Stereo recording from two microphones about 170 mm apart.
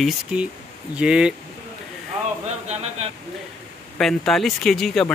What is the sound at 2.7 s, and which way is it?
Speech, 40° right (ahead or behind).